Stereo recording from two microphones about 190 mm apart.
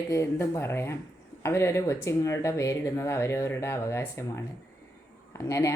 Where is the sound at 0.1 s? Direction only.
15° left (ahead or behind).